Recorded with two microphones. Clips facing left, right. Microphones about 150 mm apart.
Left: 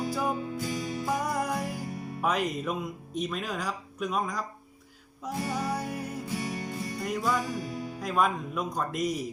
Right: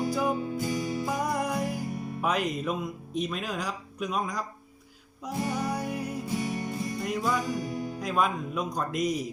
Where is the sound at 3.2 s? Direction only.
5° right (ahead or behind).